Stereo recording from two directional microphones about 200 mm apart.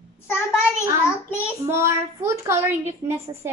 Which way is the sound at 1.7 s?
15° right (ahead or behind).